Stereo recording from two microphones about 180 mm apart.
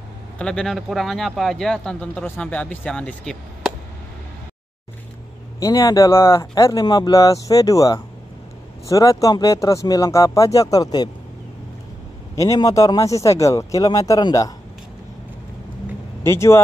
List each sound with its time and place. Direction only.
0.4 s speech: 5° left (ahead or behind)
5.6 s speech: 20° left (ahead or behind)
12.4 s speech: 20° left (ahead or behind)
16.3 s speech: 15° left (ahead or behind)